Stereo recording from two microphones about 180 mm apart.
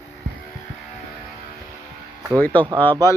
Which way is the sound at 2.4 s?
10° left (ahead or behind).